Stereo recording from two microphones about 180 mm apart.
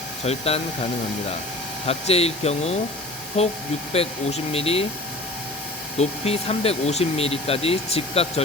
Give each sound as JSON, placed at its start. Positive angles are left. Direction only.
{"t": 0.3, "sound": "speech", "side_deg": 35}
{"t": 1.9, "sound": "speech", "side_deg": 35}
{"t": 6.0, "sound": "speech", "side_deg": 35}